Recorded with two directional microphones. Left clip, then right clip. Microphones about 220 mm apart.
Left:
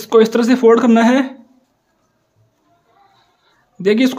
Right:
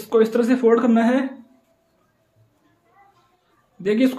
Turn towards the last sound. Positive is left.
turn(degrees=35)  # may be behind; listen again after turning